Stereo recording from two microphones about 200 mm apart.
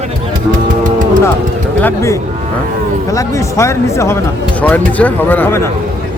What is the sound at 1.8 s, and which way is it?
Speech, 15° left (ahead or behind).